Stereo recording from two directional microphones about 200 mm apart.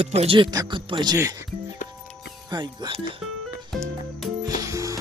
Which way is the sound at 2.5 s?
20° right (ahead or behind).